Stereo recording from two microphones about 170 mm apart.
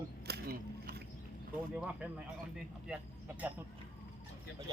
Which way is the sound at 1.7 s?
5° right (ahead or behind).